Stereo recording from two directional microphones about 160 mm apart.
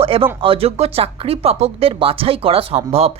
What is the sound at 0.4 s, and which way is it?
A woman's voice, 35° right (ahead or behind).